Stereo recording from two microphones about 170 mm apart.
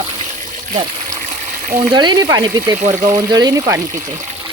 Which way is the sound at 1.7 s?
25° right (ahead or behind).